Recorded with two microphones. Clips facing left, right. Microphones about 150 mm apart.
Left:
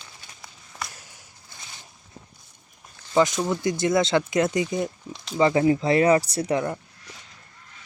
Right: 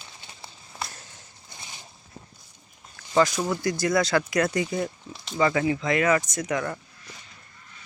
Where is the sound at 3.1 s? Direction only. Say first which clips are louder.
Left 1 dB; 20° left (ahead or behind).